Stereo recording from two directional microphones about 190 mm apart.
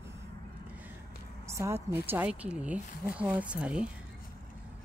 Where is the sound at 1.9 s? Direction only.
10° right (ahead or behind).